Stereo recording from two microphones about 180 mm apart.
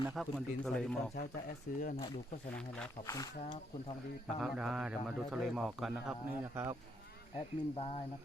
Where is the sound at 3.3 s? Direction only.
50° left (ahead or behind).